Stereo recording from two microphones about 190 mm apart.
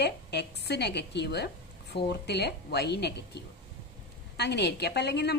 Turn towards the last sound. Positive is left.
turn(degrees=60)  # may be behind; listen again after turning